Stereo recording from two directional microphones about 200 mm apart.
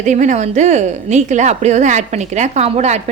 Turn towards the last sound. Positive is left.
turn(degrees=-35)  # may be behind; listen again after turning